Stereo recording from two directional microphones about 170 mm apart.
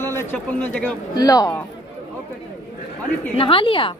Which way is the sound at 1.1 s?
20° left (ahead or behind).